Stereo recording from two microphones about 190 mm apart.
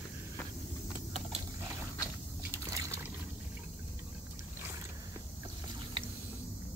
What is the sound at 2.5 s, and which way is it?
Liquid, 15° right (ahead or behind).